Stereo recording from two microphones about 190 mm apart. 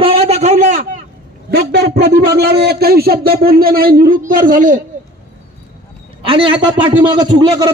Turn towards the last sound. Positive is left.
turn(degrees=-20)  # may be behind; listen again after turning